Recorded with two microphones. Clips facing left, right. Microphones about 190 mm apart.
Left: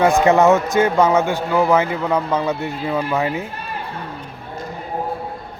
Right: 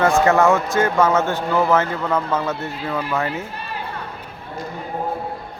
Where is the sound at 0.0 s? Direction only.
15° left (ahead or behind).